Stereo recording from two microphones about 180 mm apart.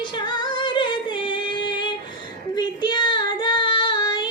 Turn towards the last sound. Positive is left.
turn(degrees=25)  # may be behind; listen again after turning